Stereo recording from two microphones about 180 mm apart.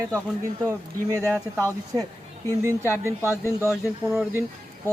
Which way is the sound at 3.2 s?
15° left (ahead or behind).